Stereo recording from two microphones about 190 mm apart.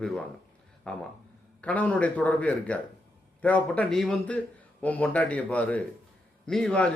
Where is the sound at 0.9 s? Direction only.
5° left (ahead or behind).